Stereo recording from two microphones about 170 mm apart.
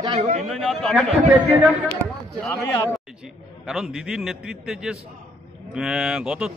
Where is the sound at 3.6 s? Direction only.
Centre (ahead or behind).